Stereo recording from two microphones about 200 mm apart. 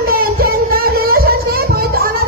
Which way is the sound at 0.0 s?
45° right (ahead or behind).